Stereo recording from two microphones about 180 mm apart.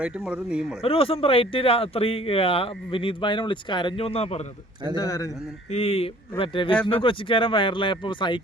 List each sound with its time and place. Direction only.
0.0 s speech: 5° right (ahead or behind)
0.8 s speech: 30° left (ahead or behind)
4.9 s speech: 20° left (ahead or behind)
5.7 s speech: 35° left (ahead or behind)